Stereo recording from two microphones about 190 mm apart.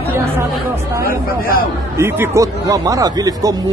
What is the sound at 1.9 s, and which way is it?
Speech, 15° right (ahead or behind).